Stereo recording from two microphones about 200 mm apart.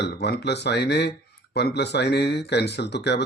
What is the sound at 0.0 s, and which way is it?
Speech, 55° left (ahead or behind).